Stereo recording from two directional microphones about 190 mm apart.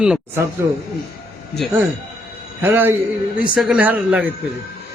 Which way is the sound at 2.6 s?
10° right (ahead or behind).